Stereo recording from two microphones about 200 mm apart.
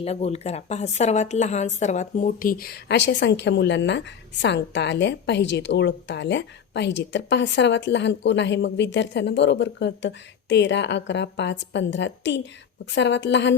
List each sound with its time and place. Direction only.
0.0 s a woman's voice: 30° left (ahead or behind); by 13.6 s 65° left (ahead or behind)